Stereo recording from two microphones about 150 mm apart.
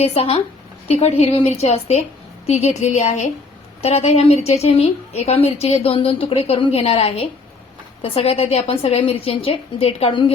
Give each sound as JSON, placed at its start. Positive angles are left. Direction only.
{"t": 0.0, "sound": "a woman's voice", "side_deg": 40}